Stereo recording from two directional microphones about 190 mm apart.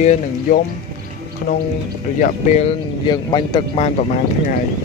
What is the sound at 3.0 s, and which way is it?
Speech, 25° left (ahead or behind).